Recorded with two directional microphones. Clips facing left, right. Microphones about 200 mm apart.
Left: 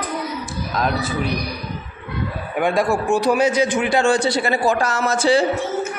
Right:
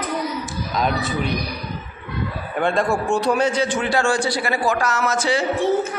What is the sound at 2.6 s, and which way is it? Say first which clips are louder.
A woman's voice: left 1 dB; 10° left (ahead or behind).